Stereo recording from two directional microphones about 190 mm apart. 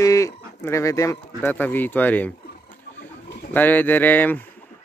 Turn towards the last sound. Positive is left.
turn(degrees=10)  # may be behind; listen again after turning